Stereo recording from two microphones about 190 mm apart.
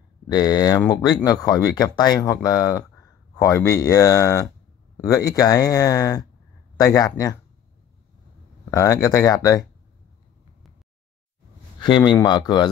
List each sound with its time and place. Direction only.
0.3 s speech: 20° left (ahead or behind)
8.6 s speech: 15° left (ahead or behind)
11.8 s speech: 25° left (ahead or behind)